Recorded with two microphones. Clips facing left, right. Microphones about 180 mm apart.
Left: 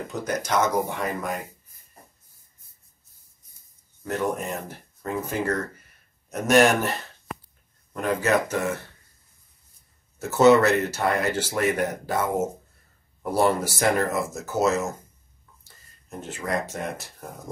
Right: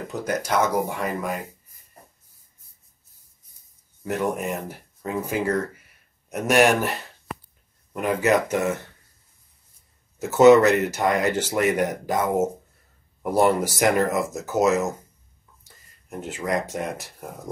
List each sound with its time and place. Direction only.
0.4 s speech: 5° right (ahead or behind)
4.0 s speech: 10° right (ahead or behind)
7.9 s speech: 15° right (ahead or behind)
10.1 s speech: 15° right (ahead or behind)
16.1 s speech: 15° right (ahead or behind)